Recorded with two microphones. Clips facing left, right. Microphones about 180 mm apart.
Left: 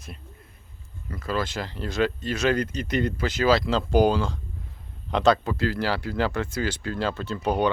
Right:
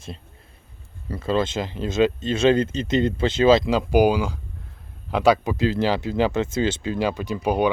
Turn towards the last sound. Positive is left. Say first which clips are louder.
# right 3 dB
turn(degrees=-10)  # may be behind; listen again after turning